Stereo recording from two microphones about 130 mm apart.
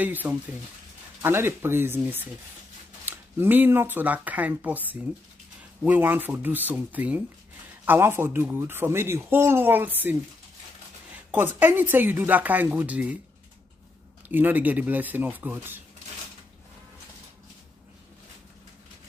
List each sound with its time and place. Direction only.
0.0 s a man's voice: 15° right (ahead or behind)
11.3 s a man's voice: 15° right (ahead or behind)
14.3 s a man's voice: 15° right (ahead or behind)